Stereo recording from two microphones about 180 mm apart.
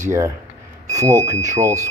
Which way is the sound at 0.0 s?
15° right (ahead or behind).